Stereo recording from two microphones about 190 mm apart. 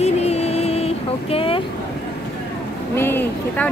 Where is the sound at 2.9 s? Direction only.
10° left (ahead or behind).